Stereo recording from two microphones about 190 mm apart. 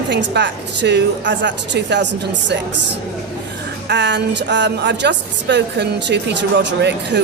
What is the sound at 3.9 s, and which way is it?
Speech, 65° right (ahead or behind).